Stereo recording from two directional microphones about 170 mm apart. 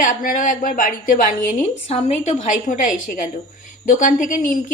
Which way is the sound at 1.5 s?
40° left (ahead or behind).